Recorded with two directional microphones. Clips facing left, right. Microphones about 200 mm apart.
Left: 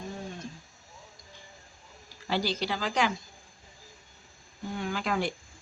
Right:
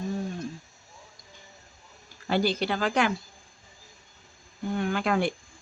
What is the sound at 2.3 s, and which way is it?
Speech, 55° right (ahead or behind).